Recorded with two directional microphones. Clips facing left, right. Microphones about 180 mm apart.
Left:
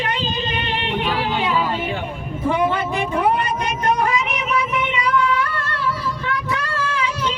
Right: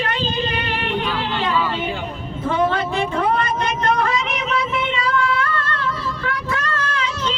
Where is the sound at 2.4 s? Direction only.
15° left (ahead or behind).